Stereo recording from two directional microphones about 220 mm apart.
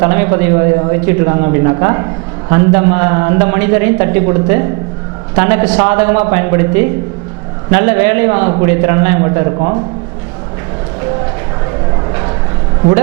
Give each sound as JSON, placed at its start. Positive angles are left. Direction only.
{"t": 0.0, "sound": "a man's voice", "side_deg": -10}
{"t": 9.6, "sound": "a man's voice", "side_deg": -30}